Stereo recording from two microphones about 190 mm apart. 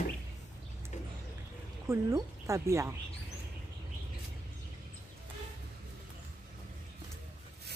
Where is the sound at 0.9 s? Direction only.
35° left (ahead or behind).